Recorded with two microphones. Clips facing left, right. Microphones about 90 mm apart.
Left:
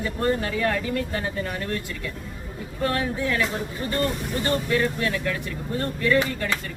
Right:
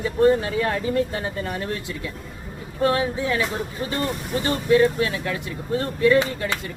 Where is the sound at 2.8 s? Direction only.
15° right (ahead or behind).